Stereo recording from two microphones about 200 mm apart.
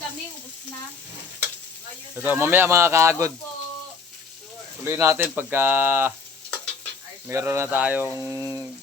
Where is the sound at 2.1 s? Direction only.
10° right (ahead or behind).